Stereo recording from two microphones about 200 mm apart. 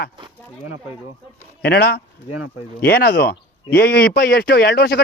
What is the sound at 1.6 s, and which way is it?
Speech, 50° left (ahead or behind).